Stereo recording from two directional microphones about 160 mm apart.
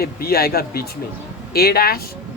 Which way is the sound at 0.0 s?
70° left (ahead or behind).